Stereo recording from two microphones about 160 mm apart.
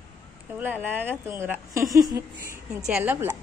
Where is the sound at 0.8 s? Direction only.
15° right (ahead or behind).